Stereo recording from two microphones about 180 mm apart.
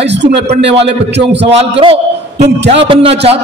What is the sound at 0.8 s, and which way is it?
Speech, 75° right (ahead or behind).